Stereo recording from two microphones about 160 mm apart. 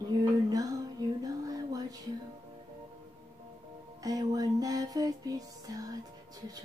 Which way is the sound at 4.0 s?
20° right (ahead or behind).